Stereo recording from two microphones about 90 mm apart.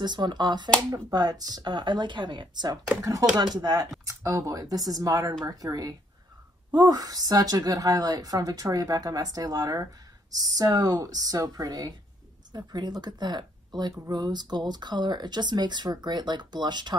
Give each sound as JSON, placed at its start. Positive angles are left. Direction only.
{"t": 0.0, "sound": "speech", "side_deg": -55}
{"t": 0.9, "sound": "speech", "side_deg": -45}
{"t": 3.0, "sound": "speech", "side_deg": -40}
{"t": 3.5, "sound": "a woman's voice", "side_deg": -50}